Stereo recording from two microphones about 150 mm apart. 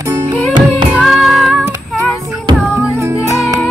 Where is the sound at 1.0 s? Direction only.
Centre (ahead or behind).